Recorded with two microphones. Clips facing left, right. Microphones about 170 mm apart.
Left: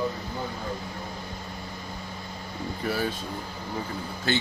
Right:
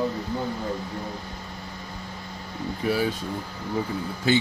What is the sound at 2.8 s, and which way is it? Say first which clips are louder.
Speech: right 4 dB; 10° right (ahead or behind).